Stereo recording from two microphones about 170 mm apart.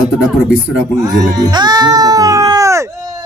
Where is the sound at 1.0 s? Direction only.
20° right (ahead or behind).